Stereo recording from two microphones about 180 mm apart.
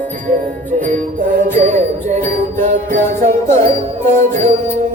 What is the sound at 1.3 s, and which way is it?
Music, 40° right (ahead or behind).